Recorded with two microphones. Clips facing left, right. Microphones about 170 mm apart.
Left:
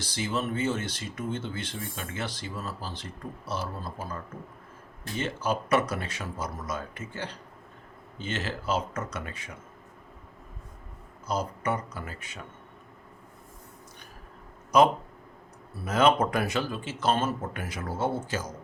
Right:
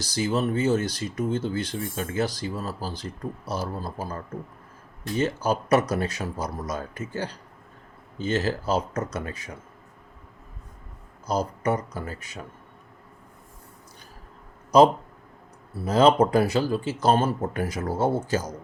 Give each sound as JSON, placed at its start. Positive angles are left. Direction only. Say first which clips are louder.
{"t": 0.0, "sound": "speech", "louder": "right 6 dB", "side_deg": -40}
{"t": 5.2, "sound": "speech", "louder": "right 4 dB", "side_deg": -40}
{"t": 11.3, "sound": "speech", "louder": "right 4 dB", "side_deg": -40}
{"t": 14.7, "sound": "speech", "louder": "right 4 dB", "side_deg": -35}